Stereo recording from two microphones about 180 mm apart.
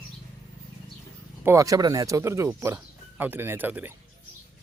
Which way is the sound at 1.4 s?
15° right (ahead or behind).